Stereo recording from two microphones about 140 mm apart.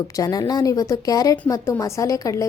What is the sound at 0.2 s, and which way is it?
A woman's voice, 25° left (ahead or behind).